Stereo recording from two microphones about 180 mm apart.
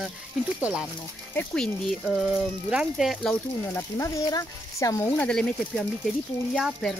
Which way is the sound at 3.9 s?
15° left (ahead or behind).